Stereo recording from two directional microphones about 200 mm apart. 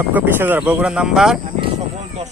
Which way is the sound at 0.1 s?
10° right (ahead or behind).